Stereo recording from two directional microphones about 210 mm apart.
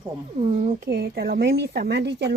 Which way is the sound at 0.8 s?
50° right (ahead or behind).